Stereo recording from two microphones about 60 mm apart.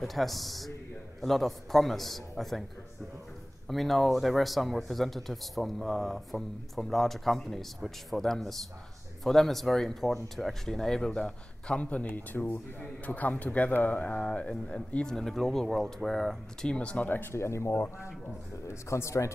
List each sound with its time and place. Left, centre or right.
0.0 s speech: centre
3.6 s speech: centre
15.1 s speech: centre
16.7 s speech: left
17.3 s speech: left